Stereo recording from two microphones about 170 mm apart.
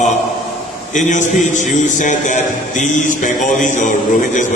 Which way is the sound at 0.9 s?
45° left (ahead or behind).